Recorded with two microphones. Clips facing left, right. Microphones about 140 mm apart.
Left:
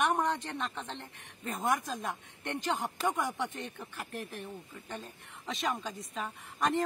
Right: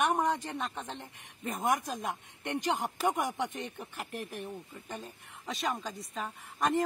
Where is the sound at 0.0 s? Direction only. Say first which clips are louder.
Right 1 dB; 10° right (ahead or behind).